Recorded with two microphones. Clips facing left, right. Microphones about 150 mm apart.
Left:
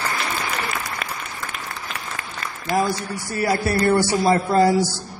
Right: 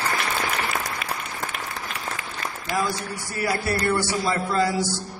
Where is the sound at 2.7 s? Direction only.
35° left (ahead or behind).